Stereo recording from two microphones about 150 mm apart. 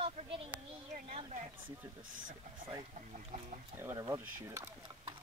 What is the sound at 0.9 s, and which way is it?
Speech, 50° right (ahead or behind).